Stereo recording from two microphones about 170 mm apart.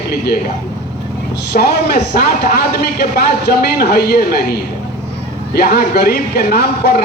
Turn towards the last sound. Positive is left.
turn(degrees=70)  # may be behind; listen again after turning